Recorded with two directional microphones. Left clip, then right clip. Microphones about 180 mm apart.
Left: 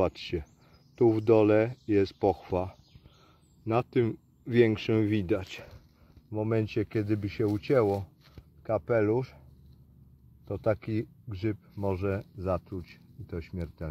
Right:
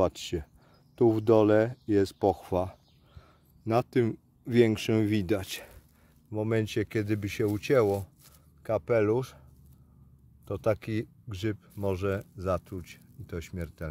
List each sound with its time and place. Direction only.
0.0 s speech: 25° right (ahead or behind)
10.6 s speech: 20° right (ahead or behind)